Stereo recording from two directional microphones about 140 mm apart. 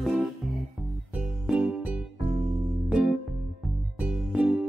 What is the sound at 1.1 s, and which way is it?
Music, 5° right (ahead or behind).